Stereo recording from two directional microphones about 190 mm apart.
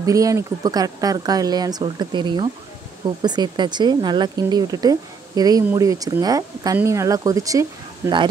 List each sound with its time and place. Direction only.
0.0 s speech: 15° right (ahead or behind)